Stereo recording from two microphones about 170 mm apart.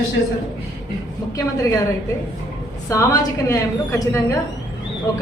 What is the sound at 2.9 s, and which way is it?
A woman's voice, 20° left (ahead or behind).